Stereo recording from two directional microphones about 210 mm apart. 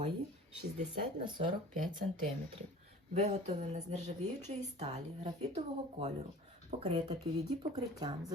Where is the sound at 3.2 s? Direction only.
30° right (ahead or behind).